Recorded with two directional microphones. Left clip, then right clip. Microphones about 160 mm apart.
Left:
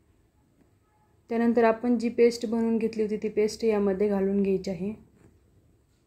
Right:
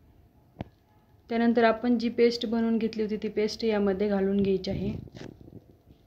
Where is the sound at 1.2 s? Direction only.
15° left (ahead or behind).